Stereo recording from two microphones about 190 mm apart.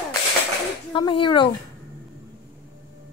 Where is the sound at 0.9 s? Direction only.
25° left (ahead or behind).